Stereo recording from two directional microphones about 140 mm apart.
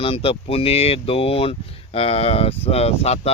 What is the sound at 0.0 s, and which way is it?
Speech, 40° left (ahead or behind).